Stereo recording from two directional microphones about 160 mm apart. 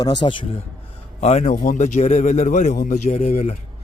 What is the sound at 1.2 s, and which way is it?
A man's voice, 45° left (ahead or behind).